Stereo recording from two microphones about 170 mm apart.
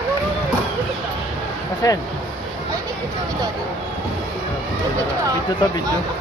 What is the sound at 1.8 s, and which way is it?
Speech, 20° left (ahead or behind).